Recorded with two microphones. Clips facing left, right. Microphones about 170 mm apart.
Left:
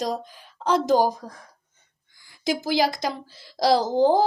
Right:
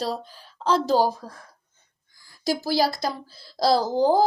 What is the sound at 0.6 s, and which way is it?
Speech, 15° left (ahead or behind).